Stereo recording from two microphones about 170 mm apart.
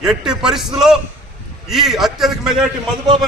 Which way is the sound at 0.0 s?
5° right (ahead or behind).